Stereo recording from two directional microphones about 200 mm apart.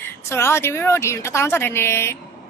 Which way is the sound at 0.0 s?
15° left (ahead or behind).